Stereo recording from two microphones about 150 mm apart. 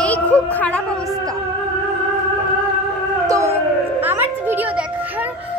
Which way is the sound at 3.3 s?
15° right (ahead or behind).